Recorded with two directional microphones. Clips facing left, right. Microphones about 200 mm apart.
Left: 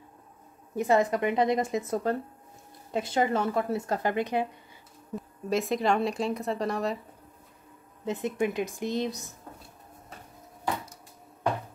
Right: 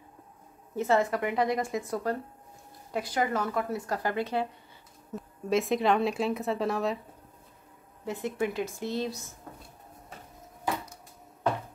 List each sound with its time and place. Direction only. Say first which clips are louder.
0.7 s speech: left 2 dB; 15° left (ahead or behind)
5.1 s speech: right 1 dB; centre (ahead or behind)
8.0 s a woman's voice: left 2 dB; 20° left (ahead or behind)